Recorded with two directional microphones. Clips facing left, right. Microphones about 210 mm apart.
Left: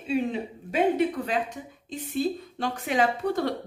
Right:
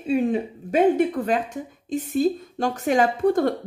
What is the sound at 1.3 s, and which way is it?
A woman's voice, 45° right (ahead or behind).